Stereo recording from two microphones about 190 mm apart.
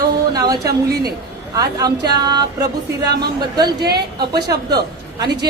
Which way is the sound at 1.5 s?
20° right (ahead or behind).